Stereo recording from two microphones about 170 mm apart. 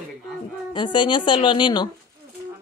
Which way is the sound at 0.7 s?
30° left (ahead or behind).